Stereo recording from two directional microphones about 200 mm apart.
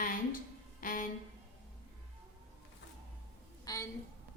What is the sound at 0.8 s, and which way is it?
Music, 40° left (ahead or behind).